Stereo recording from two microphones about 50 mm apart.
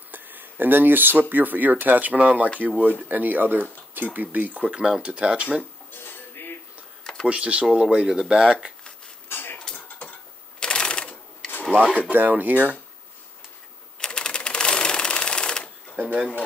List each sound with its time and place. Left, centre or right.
0.1 s a sound: right
1.3 s speech: right
4.6 s speech: centre
5.6 s dishes: left
7.2 s speech: right
9.3 s mechanisms: left
10.0 s a sound: left
10.6 s typewriter: centre
11.7 s speech: right
12.1 s speech: right
13.9 s typewriter: centre
16.0 s a sound: right